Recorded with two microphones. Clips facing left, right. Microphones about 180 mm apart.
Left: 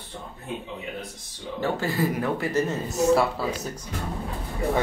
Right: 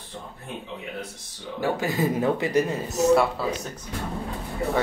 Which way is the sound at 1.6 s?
15° right (ahead or behind).